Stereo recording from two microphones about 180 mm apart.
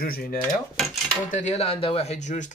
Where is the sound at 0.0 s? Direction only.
55° left (ahead or behind).